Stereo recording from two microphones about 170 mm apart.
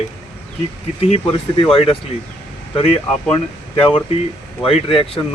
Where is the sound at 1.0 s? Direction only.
40° left (ahead or behind).